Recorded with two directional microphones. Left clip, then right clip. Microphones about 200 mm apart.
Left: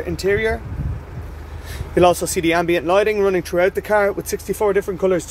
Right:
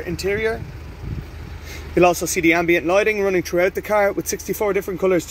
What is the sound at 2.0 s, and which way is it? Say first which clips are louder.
Speech: left 1 dB; 10° right (ahead or behind).